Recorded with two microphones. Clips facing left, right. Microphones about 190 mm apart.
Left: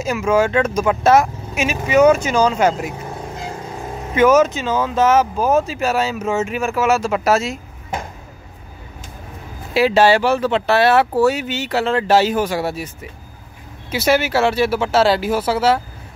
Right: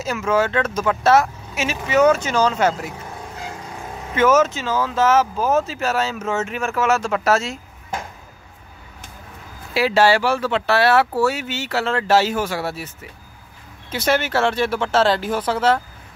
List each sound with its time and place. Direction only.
0.0 s speech: 15° left (ahead or behind)
4.1 s speech: 15° left (ahead or behind)
9.8 s speech: 20° left (ahead or behind)